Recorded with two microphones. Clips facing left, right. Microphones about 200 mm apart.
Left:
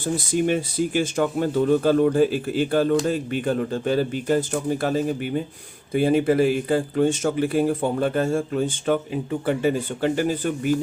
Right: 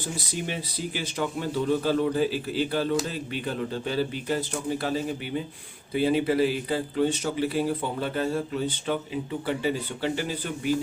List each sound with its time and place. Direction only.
0.4 s speech: 50° left (ahead or behind)